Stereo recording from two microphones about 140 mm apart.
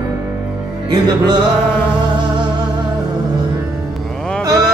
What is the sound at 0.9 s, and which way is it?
Music, 30° right (ahead or behind).